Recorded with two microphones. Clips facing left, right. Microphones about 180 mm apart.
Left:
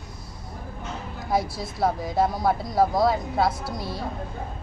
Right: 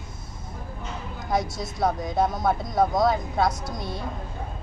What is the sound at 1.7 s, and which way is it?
A woman's voice, centre (ahead or behind).